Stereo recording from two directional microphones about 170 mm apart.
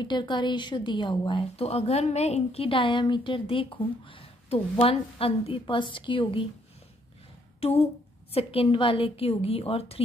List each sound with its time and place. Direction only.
0.0 s a woman's voice: 25° left (ahead or behind)
7.6 s a woman's voice: 35° left (ahead or behind)